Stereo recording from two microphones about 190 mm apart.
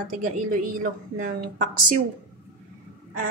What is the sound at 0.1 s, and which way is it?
Speech, 45° right (ahead or behind).